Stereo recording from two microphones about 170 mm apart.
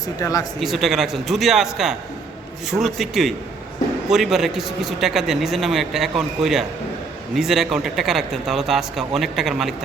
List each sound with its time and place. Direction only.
0.2 s speech: 20° left (ahead or behind)
0.6 s a man's voice: centre (ahead or behind)